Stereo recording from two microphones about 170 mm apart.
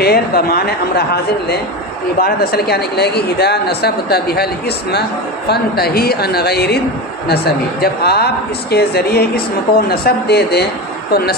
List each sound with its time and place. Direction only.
0.0 s speech: 65° left (ahead or behind)